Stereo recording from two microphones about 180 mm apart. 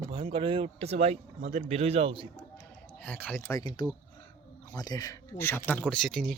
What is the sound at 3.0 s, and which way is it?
Speech, 10° left (ahead or behind).